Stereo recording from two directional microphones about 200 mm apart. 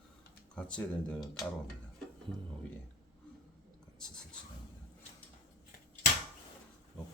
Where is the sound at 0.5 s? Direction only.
5° left (ahead or behind).